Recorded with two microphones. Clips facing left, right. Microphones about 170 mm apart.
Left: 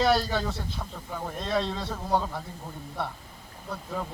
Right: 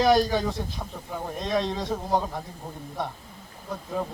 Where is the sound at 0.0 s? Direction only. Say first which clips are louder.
Right 4 dB; 15° right (ahead or behind).